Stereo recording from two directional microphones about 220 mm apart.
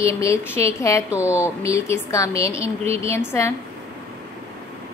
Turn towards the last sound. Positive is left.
turn(degrees=10)  # may be behind; listen again after turning